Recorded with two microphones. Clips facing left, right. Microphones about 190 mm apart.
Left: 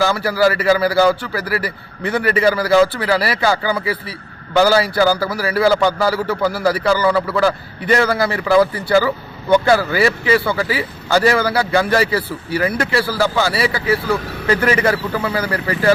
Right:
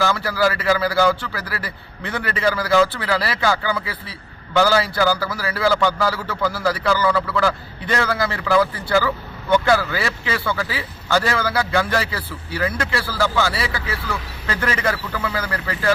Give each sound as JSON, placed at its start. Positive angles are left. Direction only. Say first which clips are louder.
{"t": 0.0, "sound": "a man's voice", "louder": "left 4 dB", "side_deg": 10}
{"t": 6.1, "sound": "a man's voice", "louder": "left 5 dB", "side_deg": 40}
{"t": 6.5, "sound": "a man's voice", "louder": "left 2 dB", "side_deg": 10}